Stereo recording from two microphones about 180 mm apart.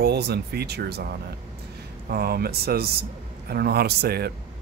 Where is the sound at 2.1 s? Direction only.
60° right (ahead or behind).